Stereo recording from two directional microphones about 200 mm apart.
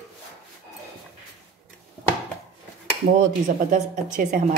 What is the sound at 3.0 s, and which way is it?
Speech, 40° right (ahead or behind).